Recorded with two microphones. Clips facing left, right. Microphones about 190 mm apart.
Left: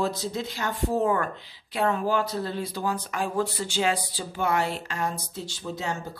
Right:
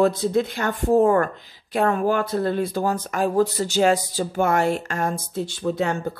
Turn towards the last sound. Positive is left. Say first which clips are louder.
# right 9 dB
turn(degrees=-60)  # may be behind; listen again after turning